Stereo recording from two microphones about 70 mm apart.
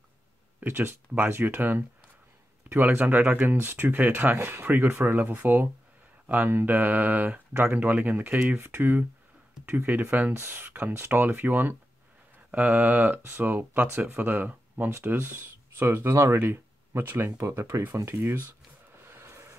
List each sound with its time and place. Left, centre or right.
0.6 s speech: right
3.5 s speech: right
15.0 s speech: right
17.4 s speech: right
19.0 s a sound: right